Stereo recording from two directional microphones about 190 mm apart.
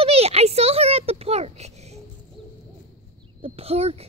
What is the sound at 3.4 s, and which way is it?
Speech, 30° right (ahead or behind).